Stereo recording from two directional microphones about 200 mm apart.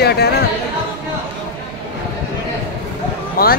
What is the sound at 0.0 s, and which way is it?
Music, 55° left (ahead or behind).